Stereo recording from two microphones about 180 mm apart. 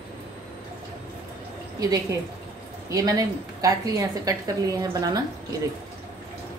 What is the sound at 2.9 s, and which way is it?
A woman's voice, 20° right (ahead or behind).